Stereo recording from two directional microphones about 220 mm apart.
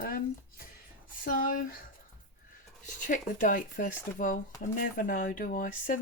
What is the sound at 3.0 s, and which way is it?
Speech, 35° left (ahead or behind).